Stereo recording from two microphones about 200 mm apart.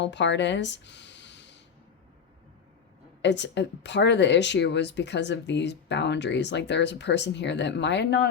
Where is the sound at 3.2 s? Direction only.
60° left (ahead or behind).